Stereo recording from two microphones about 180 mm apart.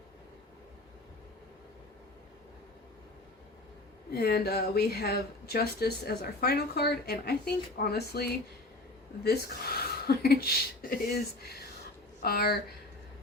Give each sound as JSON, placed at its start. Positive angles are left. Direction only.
{"t": 4.1, "sound": "speech", "side_deg": 65}